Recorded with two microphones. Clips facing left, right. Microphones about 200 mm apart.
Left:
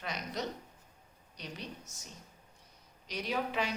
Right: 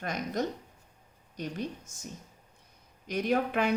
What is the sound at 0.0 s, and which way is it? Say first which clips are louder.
A woman's voice: right 6 dB; 50° right (ahead or behind).